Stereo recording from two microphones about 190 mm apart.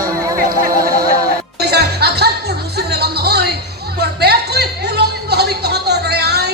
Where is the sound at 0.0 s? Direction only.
15° right (ahead or behind).